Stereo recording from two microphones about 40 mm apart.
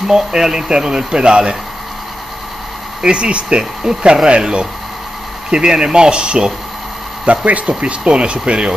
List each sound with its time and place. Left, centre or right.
0.1 s speech: centre
3.0 s speech: right
7.2 s speech: right